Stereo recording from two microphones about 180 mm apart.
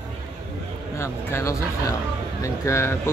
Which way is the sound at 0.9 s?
15° left (ahead or behind).